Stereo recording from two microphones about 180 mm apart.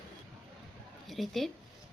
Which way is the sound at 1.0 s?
Centre (ahead or behind).